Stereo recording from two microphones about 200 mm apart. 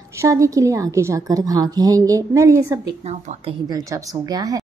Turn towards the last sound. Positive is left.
turn(degrees=-20)  # may be behind; listen again after turning